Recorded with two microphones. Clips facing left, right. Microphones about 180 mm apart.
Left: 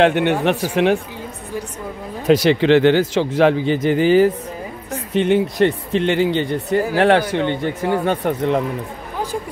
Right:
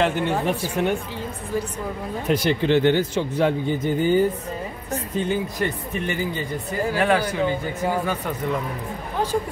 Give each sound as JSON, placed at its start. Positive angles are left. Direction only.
{"t": 0.0, "sound": "speech", "side_deg": 70}
{"t": 2.2, "sound": "a man's voice", "side_deg": 90}
{"t": 5.1, "sound": "speech", "side_deg": 80}
{"t": 8.0, "sound": "speech", "side_deg": 65}